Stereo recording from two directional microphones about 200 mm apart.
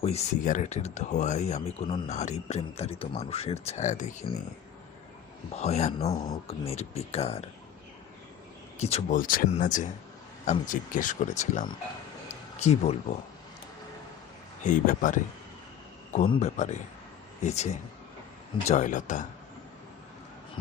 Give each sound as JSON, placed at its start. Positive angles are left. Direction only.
{"t": 0.0, "sound": "speech", "side_deg": 35}
{"t": 5.5, "sound": "speech", "side_deg": 35}
{"t": 8.8, "sound": "speech", "side_deg": 30}
{"t": 14.6, "sound": "speech", "side_deg": 40}
{"t": 16.3, "sound": "speech", "side_deg": 35}